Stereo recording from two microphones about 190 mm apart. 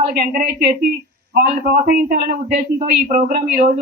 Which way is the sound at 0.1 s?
50° right (ahead or behind).